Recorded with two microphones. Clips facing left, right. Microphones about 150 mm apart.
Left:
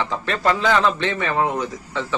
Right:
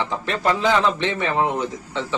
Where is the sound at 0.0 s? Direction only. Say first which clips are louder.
Left 1 dB; 20° right (ahead or behind).